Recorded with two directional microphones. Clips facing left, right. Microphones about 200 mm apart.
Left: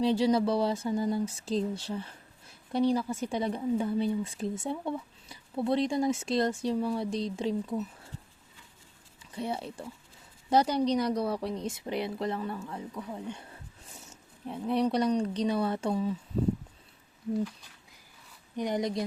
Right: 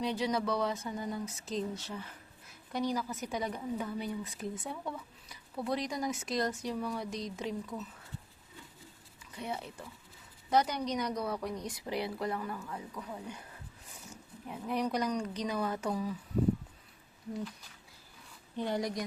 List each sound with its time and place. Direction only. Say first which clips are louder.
0.0 s speech: left 7 dB; 30° left (ahead or behind)
9.3 s speech: left 5 dB; 30° left (ahead or behind)
12.9 s speech: left 4 dB; 10° left (ahead or behind)
13.1 s speech: left 5 dB; 25° left (ahead or behind)
18.5 s speech: left 4 dB; 15° left (ahead or behind)